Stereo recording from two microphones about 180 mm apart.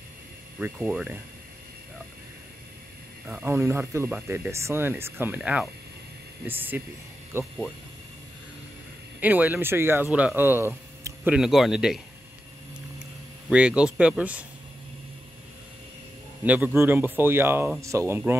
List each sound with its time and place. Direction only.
0.6 s speech: 5° right (ahead or behind)
3.3 s speech: 15° right (ahead or behind)
9.2 s speech: 10° right (ahead or behind)
13.5 s speech: 5° right (ahead or behind)
16.4 s speech: 10° right (ahead or behind)